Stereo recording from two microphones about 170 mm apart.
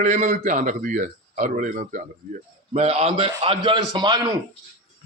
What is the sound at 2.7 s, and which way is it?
A man's voice, 35° right (ahead or behind).